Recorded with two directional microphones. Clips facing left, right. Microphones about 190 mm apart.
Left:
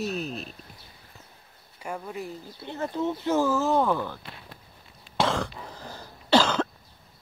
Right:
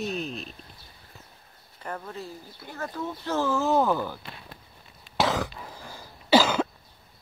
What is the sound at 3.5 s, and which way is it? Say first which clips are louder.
Speech: even; centre (ahead or behind).